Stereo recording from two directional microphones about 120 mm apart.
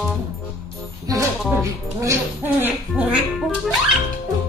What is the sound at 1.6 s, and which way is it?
Speech, 25° right (ahead or behind).